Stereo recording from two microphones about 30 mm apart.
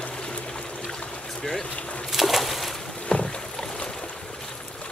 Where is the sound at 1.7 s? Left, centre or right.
Left.